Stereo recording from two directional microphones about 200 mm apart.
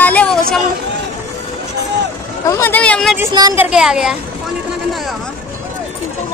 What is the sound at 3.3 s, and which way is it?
Speech, 20° right (ahead or behind).